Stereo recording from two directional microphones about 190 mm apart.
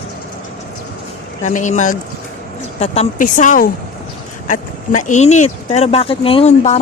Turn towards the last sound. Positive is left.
turn(degrees=35)  # may be behind; listen again after turning